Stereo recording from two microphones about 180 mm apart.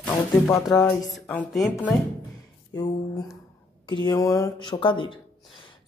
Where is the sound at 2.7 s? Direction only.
20° left (ahead or behind).